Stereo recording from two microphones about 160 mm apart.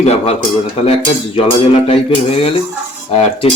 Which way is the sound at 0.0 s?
40° left (ahead or behind).